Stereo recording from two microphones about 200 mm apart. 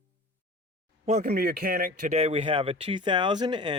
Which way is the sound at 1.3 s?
50° right (ahead or behind).